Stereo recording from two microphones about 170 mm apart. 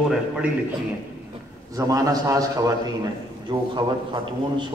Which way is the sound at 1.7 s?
20° right (ahead or behind).